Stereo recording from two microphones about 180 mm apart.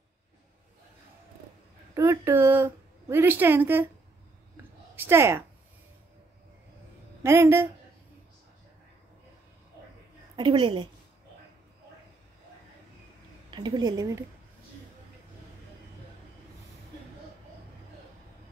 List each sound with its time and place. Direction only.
2.0 s a woman's voice: 15° right (ahead or behind)
4.9 s speech: 15° right (ahead or behind)
7.2 s speech: 15° right (ahead or behind)
10.3 s a woman's voice: 25° right (ahead or behind)
13.5 s a woman's voice: 20° right (ahead or behind)